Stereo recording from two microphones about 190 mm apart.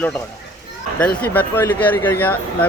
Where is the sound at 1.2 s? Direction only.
10° left (ahead or behind).